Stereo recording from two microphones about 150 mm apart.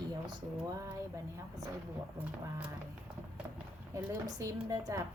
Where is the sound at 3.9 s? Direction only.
20° right (ahead or behind).